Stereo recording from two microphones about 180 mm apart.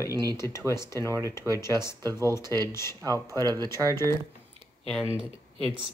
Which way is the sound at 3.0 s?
20° right (ahead or behind).